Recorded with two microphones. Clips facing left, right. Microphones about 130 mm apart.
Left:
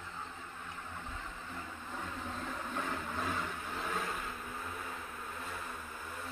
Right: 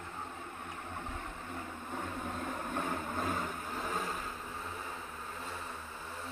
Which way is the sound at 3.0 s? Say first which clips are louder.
Right 2 dB; 40° right (ahead or behind).